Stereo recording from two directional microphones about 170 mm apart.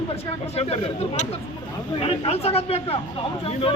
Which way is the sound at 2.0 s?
35° left (ahead or behind).